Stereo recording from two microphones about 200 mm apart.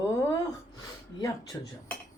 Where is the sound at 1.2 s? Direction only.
15° left (ahead or behind).